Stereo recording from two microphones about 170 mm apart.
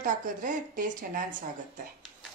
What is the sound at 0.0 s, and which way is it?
Speech, 50° right (ahead or behind).